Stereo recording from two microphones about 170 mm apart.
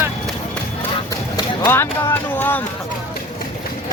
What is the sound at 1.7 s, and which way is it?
Speech, 15° left (ahead or behind).